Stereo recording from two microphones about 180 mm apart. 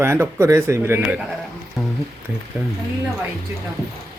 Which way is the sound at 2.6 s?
15° right (ahead or behind).